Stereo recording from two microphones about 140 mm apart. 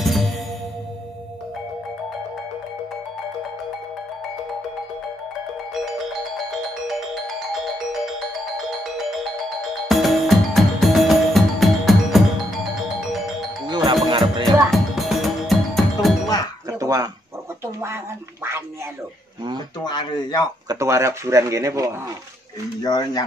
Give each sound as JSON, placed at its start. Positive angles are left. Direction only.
{"t": 0.0, "sound": "music", "side_deg": 0}
{"t": 9.8, "sound": "music", "side_deg": 0}
{"t": 13.7, "sound": "music", "side_deg": -30}
{"t": 14.4, "sound": "music", "side_deg": 0}
{"t": 16.8, "sound": "dog", "side_deg": -25}
{"t": 17.6, "sound": "a sound", "side_deg": -20}
{"t": 19.8, "sound": "a sound", "side_deg": 30}
{"t": 20.6, "sound": "speech", "side_deg": -20}
{"t": 22.8, "sound": "speech", "side_deg": 30}